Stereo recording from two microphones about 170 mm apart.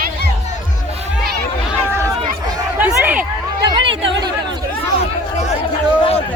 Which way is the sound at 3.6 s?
25° right (ahead or behind).